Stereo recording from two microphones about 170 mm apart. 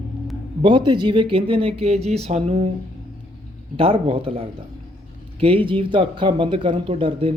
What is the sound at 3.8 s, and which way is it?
A man's voice, 35° right (ahead or behind).